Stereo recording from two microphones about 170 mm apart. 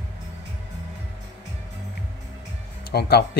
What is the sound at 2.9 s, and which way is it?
Speech, 70° left (ahead or behind).